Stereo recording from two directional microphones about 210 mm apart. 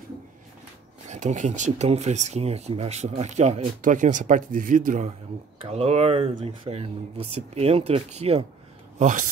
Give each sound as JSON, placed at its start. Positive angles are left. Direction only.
{"t": 1.0, "sound": "speech", "side_deg": -35}